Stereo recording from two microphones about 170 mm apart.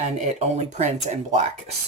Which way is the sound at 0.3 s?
40° right (ahead or behind).